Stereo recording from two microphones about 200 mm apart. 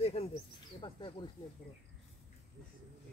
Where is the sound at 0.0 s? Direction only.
30° left (ahead or behind).